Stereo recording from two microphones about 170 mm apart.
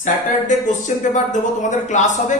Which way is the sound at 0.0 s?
45° left (ahead or behind).